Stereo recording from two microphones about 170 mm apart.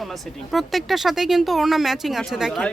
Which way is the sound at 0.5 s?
Centre (ahead or behind).